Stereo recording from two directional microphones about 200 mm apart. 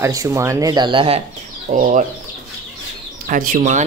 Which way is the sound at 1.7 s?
40° right (ahead or behind).